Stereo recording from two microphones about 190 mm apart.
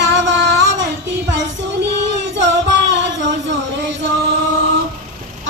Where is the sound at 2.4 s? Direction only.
70° right (ahead or behind).